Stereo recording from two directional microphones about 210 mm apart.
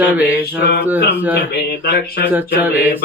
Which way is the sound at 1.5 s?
50° left (ahead or behind).